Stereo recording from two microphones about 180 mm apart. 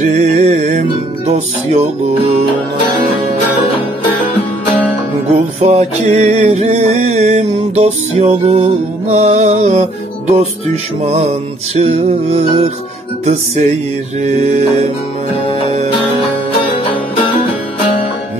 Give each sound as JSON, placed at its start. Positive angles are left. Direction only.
{"t": 0.0, "sound": "music", "side_deg": -40}
{"t": 5.7, "sound": "music", "side_deg": -40}
{"t": 11.7, "sound": "music", "side_deg": -35}